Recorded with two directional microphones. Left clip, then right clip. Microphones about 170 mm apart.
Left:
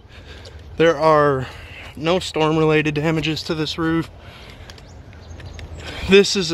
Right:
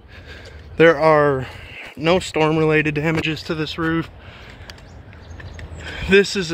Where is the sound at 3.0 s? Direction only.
20° left (ahead or behind).